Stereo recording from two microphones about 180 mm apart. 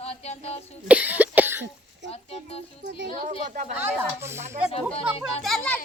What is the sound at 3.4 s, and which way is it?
Speech, 45° right (ahead or behind).